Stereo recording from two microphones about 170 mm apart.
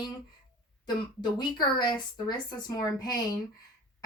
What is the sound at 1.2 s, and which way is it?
Speech, 25° left (ahead or behind).